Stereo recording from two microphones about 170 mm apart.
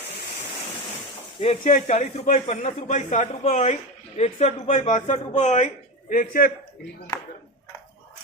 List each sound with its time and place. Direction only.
1.4 s a man's voice: 35° left (ahead or behind); by 6.5 s 55° left (ahead or behind)